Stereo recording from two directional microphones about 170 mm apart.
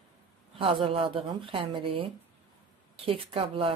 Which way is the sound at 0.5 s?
30° right (ahead or behind).